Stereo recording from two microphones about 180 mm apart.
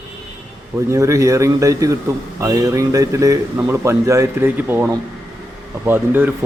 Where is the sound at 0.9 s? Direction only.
15° right (ahead or behind).